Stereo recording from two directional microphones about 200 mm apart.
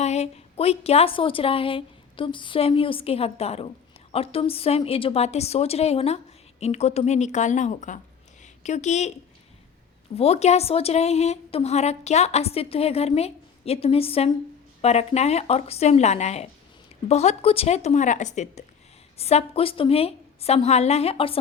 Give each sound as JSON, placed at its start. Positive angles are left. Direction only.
{"t": 0.0, "sound": "a woman's voice", "side_deg": 35}
{"t": 10.2, "sound": "a woman's voice", "side_deg": 30}